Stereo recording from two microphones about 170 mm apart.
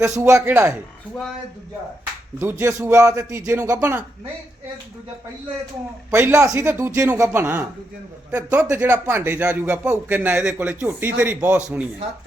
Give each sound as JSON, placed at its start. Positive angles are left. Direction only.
{"t": 0.0, "sound": "speech", "side_deg": -20}
{"t": 2.4, "sound": "speech", "side_deg": -15}
{"t": 6.1, "sound": "speech", "side_deg": -15}